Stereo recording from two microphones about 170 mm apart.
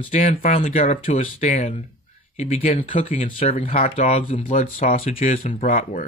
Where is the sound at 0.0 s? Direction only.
40° left (ahead or behind).